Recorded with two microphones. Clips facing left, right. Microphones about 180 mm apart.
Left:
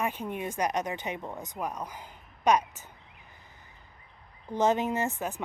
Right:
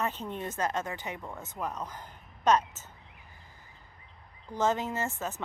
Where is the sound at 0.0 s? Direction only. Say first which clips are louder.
Left 2 dB; 10° left (ahead or behind).